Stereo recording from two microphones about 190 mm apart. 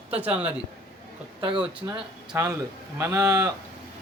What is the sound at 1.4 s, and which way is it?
Speech, 25° right (ahead or behind).